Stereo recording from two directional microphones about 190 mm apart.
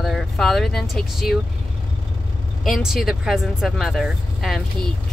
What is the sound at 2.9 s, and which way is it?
Speech, centre (ahead or behind).